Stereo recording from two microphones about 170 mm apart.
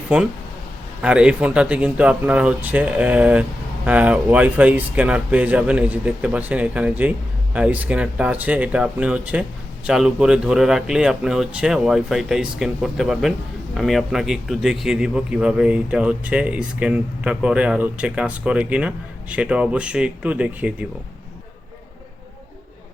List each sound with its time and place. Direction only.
0.1 s a man's voice: 10° right (ahead or behind)